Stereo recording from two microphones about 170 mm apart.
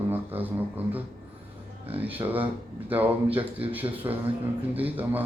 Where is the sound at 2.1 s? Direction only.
10° right (ahead or behind).